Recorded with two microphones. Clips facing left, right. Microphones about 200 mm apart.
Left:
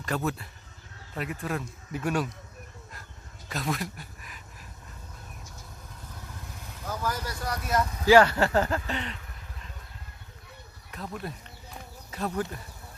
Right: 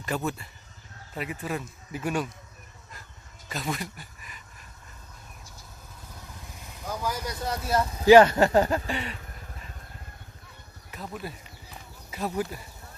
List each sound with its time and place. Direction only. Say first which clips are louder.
0.0 s speech: even; centre (ahead or behind)
3.5 s speech: left 1 dB; centre (ahead or behind)
6.8 s speech: right 1 dB; 10° right (ahead or behind)
10.9 s speech: even; 5° right (ahead or behind)